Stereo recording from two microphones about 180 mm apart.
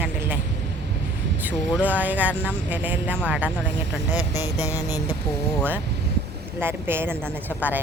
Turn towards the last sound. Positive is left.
turn(degrees=-10)  # may be behind; listen again after turning